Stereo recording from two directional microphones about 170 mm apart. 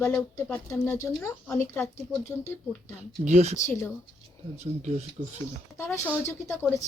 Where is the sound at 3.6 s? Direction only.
15° left (ahead or behind).